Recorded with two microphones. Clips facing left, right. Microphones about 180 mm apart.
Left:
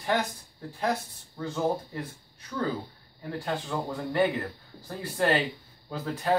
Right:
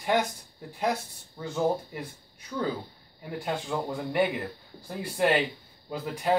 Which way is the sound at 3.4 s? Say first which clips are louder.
Right 1 dB; 15° right (ahead or behind).